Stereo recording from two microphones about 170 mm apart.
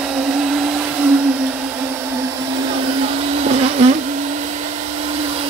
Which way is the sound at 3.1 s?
40° right (ahead or behind).